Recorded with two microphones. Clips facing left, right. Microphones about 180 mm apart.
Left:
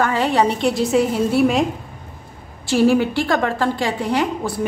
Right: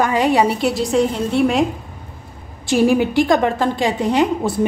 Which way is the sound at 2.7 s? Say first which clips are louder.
Right 1 dB; 15° right (ahead or behind).